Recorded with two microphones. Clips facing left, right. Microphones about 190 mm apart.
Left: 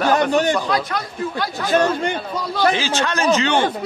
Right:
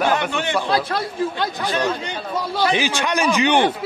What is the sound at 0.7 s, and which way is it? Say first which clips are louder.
Speech: right 1 dB; 30° right (ahead or behind).